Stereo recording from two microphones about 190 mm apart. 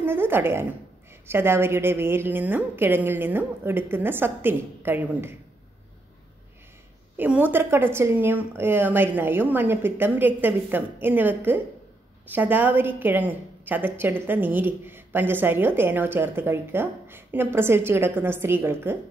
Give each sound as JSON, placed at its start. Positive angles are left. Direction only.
{"t": 0.0, "sound": "a woman's voice", "side_deg": -10}
{"t": 7.2, "sound": "a woman's voice", "side_deg": -10}